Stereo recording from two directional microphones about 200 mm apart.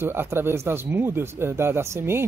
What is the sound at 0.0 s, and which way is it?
Speech, 10° right (ahead or behind).